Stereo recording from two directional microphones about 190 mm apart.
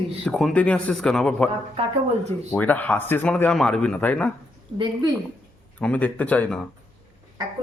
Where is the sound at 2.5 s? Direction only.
10° left (ahead or behind).